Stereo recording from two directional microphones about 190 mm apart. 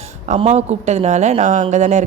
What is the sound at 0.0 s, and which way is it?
Speech, 35° right (ahead or behind).